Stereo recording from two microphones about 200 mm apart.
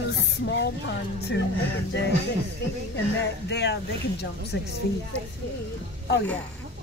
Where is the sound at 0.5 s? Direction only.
60° left (ahead or behind).